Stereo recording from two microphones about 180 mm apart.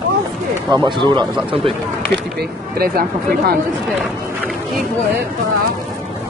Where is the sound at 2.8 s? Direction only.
55° right (ahead or behind).